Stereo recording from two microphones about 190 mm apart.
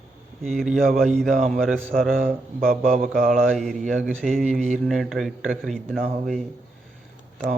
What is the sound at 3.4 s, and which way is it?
Speech, centre (ahead or behind).